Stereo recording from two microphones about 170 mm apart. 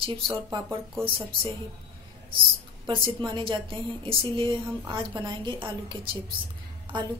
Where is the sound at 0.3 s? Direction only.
20° right (ahead or behind).